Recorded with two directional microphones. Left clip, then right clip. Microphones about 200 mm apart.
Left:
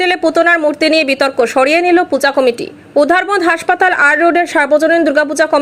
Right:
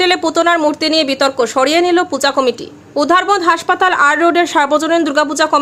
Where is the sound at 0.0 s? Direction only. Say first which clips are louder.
Left 1 dB; 5° left (ahead or behind).